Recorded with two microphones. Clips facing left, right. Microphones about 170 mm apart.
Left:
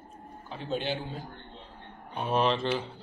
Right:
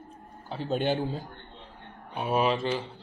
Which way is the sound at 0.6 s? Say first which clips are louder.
Right 5 dB; 45° right (ahead or behind).